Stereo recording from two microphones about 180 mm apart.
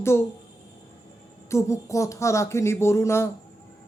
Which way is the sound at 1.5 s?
15° left (ahead or behind).